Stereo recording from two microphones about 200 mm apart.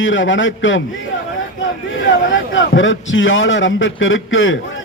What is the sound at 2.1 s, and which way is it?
A man's voice, 70° left (ahead or behind).